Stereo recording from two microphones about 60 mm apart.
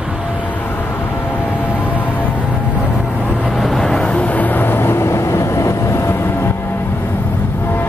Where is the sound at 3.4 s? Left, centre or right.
Centre; by 6.5 s left.